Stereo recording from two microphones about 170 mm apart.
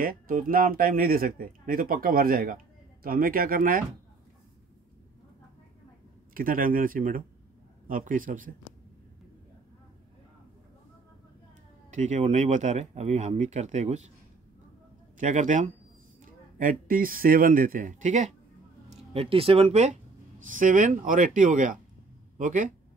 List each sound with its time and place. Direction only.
0.0 s speech: 55° right (ahead or behind)
6.3 s speech: 55° right (ahead or behind)
11.9 s speech: 45° right (ahead or behind)
15.1 s speech: 45° right (ahead or behind)
19.1 s speech: 35° right (ahead or behind); by 22.7 s 50° right (ahead or behind)